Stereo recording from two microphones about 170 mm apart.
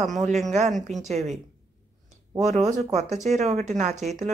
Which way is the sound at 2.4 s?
40° right (ahead or behind).